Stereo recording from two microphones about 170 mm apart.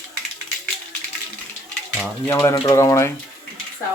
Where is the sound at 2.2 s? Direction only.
15° left (ahead or behind).